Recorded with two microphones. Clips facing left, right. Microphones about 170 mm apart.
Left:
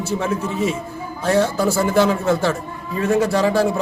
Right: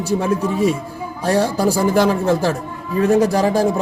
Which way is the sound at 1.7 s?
15° right (ahead or behind).